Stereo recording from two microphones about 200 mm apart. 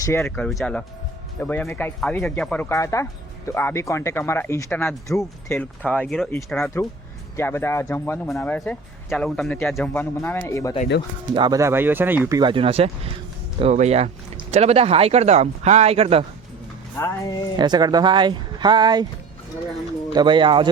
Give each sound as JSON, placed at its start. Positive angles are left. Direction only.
{"t": 0.0, "sound": "speech", "side_deg": 10}
{"t": 11.3, "sound": "speech", "side_deg": -20}
{"t": 12.4, "sound": "speech", "side_deg": -25}
{"t": 17.0, "sound": "speech", "side_deg": 15}
{"t": 17.6, "sound": "speech", "side_deg": -20}
{"t": 20.1, "sound": "speech", "side_deg": -25}